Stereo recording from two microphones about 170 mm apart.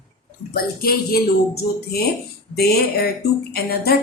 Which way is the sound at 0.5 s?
65° left (ahead or behind).